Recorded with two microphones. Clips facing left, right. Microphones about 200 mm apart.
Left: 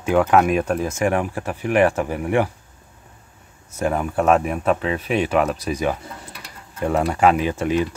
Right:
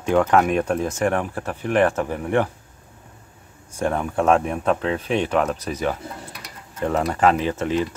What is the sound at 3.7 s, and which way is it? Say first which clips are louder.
Speech: left 1 dB; 5° left (ahead or behind).